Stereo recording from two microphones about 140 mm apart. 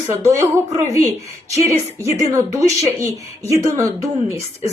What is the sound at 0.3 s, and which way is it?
Speech, 20° right (ahead or behind).